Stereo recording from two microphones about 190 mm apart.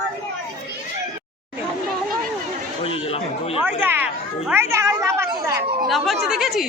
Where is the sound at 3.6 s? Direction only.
10° right (ahead or behind).